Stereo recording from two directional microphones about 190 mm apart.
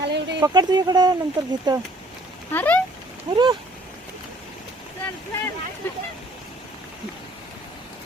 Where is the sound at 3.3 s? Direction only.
25° right (ahead or behind).